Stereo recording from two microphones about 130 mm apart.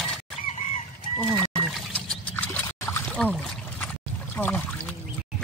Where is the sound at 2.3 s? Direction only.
15° left (ahead or behind).